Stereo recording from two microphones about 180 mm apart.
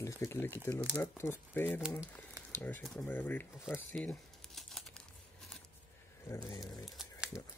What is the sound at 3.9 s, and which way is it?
Crumpling, 5° left (ahead or behind).